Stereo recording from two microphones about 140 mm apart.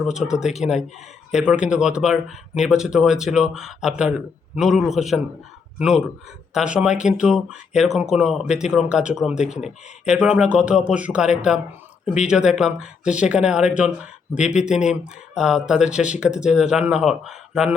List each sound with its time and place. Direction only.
0.0 s speech: 5° right (ahead or behind)
6.5 s speech: 5° right (ahead or behind)
14.4 s speech: 55° left (ahead or behind)
14.7 s speech: 5° right (ahead or behind)